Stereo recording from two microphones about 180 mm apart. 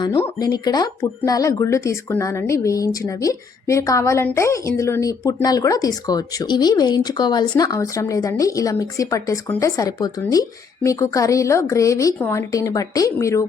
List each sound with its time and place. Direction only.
0.2 s a woman's voice: 15° left (ahead or behind)